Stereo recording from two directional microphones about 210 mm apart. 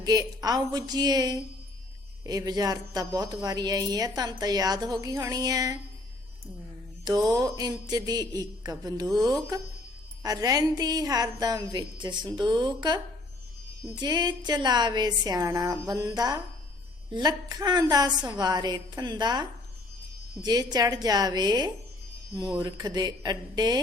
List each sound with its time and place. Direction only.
0.0 s a woman's voice: 20° right (ahead or behind)
7.3 s a woman's voice: 20° right (ahead or behind)
14.0 s a woman's voice: 20° right (ahead or behind)